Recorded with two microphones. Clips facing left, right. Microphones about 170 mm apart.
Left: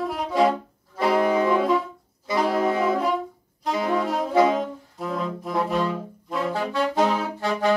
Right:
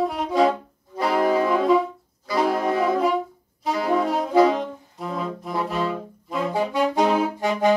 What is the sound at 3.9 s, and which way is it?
Saxophone, centre (ahead or behind).